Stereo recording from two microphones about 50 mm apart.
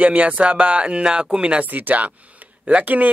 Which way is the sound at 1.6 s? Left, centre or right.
Right.